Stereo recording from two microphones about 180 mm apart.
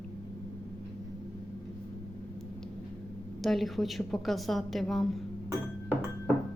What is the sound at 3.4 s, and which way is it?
A woman's voice, centre (ahead or behind).